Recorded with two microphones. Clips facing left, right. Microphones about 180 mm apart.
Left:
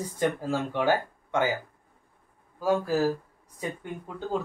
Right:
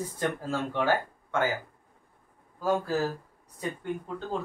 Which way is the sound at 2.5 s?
10° left (ahead or behind).